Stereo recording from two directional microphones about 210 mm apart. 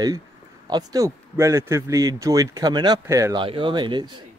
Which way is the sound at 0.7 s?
20° right (ahead or behind).